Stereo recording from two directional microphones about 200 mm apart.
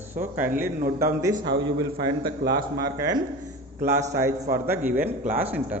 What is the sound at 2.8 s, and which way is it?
A man's voice, 20° right (ahead or behind).